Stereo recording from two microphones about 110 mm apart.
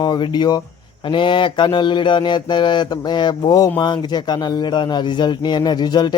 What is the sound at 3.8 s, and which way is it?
A man's voice, 40° left (ahead or behind).